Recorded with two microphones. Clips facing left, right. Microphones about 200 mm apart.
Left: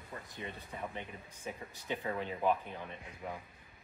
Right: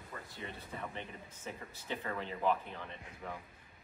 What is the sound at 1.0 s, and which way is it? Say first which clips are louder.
Speech: left 1 dB; 15° left (ahead or behind).